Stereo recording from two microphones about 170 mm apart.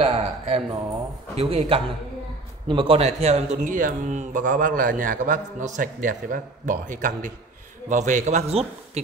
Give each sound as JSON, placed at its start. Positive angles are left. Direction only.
{"t": 0.0, "sound": "a man's voice", "side_deg": -35}